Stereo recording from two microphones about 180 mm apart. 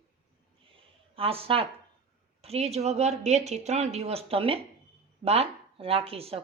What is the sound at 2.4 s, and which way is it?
Speech, 35° right (ahead or behind).